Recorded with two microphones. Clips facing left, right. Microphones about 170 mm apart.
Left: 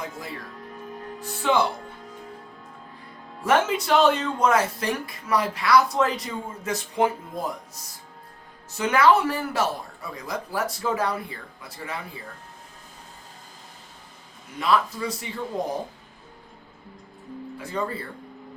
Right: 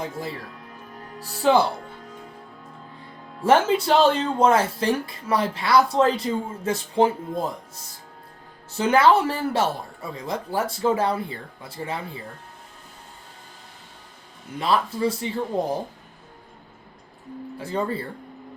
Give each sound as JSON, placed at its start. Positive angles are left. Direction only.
{"t": 1.2, "sound": "speech", "side_deg": -35}
{"t": 3.4, "sound": "speech", "side_deg": -30}
{"t": 14.6, "sound": "speech", "side_deg": -30}
{"t": 17.6, "sound": "speech", "side_deg": -30}